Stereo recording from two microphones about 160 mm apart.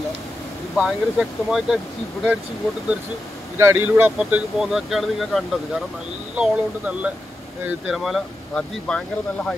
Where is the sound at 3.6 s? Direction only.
15° right (ahead or behind).